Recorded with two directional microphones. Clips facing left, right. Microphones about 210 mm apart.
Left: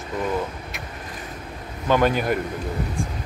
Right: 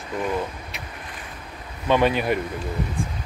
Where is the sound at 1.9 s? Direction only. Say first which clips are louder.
Even; centre (ahead or behind).